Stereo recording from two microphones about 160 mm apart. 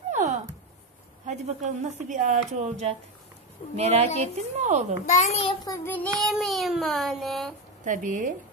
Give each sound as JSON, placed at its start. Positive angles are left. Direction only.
{"t": 0.1, "sound": "a sound", "side_deg": -50}
{"t": 1.2, "sound": "speech", "side_deg": -50}
{"t": 5.0, "sound": "a child's voice", "side_deg": 45}
{"t": 5.7, "sound": "child singing", "side_deg": 10}
{"t": 6.2, "sound": "child singing", "side_deg": 0}
{"t": 7.8, "sound": "speech", "side_deg": -55}